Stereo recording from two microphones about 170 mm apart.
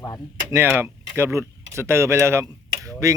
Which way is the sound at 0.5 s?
15° right (ahead or behind).